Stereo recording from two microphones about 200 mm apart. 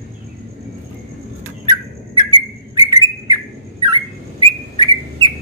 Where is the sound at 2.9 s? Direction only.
20° right (ahead or behind).